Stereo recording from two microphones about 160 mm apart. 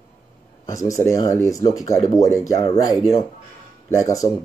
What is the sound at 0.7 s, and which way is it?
Speech, 20° left (ahead or behind).